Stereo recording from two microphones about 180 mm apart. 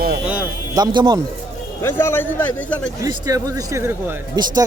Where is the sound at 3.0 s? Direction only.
20° right (ahead or behind).